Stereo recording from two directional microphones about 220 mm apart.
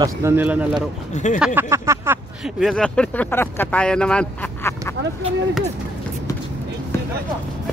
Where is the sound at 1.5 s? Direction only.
10° right (ahead or behind).